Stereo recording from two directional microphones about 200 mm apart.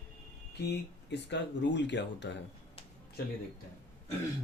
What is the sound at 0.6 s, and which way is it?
Speech, 60° left (ahead or behind).